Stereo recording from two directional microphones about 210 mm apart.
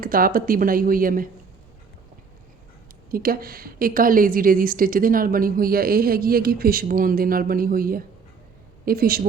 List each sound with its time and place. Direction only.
0.0 s a woman's voice: 45° right (ahead or behind)
3.1 s a woman's voice: 45° right (ahead or behind)